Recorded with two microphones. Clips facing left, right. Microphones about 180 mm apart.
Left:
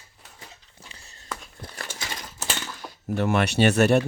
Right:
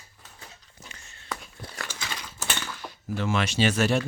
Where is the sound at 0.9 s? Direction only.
35° left (ahead or behind).